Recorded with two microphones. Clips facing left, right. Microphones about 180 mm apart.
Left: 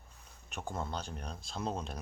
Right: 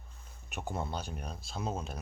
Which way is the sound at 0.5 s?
10° right (ahead or behind).